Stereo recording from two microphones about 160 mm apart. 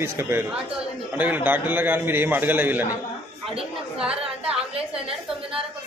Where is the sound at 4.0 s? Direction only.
5° right (ahead or behind).